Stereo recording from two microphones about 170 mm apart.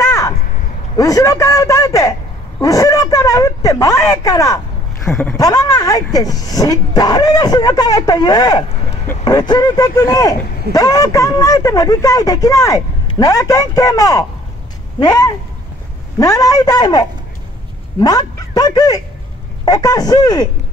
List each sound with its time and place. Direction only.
0.0 s a sound: 20° left (ahead or behind)
0.9 s speech: 20° left (ahead or behind)
5.1 s speech: centre (ahead or behind)
5.4 s speech: 20° left (ahead or behind)